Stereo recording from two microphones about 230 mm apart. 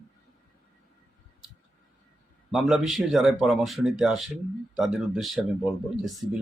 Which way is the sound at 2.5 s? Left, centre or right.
Centre.